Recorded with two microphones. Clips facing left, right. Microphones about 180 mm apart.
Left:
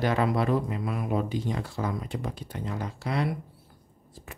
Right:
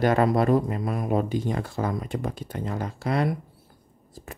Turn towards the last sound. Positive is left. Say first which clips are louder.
# right 4 dB
turn(degrees=-50)  # may be behind; listen again after turning